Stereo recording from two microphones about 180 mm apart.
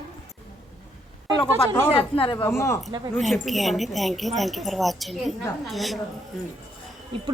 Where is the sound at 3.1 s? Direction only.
Centre (ahead or behind).